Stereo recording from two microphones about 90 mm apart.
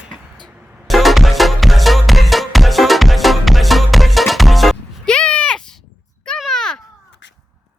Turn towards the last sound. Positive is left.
turn(degrees=5)  # may be behind; listen again after turning